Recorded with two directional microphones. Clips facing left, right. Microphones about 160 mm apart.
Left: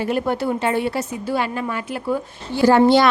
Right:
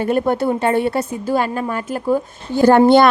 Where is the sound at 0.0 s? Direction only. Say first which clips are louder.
Right 4 dB; 50° right (ahead or behind).